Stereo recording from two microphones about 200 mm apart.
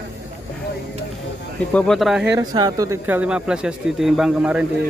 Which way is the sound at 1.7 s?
Centre (ahead or behind).